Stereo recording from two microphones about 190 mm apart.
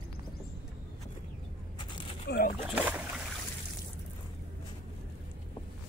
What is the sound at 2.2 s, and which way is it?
Speech, 55° left (ahead or behind).